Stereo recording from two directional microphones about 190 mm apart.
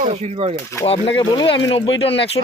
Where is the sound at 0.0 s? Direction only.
35° right (ahead or behind).